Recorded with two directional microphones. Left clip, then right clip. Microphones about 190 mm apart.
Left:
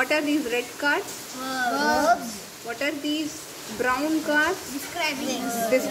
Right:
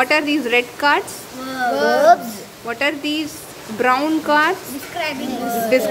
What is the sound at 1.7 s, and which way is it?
Speech, 30° right (ahead or behind).